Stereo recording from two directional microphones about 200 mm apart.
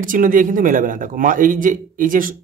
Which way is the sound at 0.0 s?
40° right (ahead or behind).